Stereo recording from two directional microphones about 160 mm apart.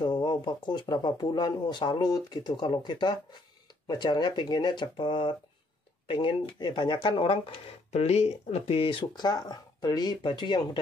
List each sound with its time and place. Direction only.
0.0 s speech: 30° left (ahead or behind)